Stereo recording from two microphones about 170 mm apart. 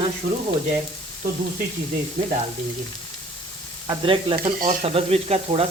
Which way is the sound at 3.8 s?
30° right (ahead or behind).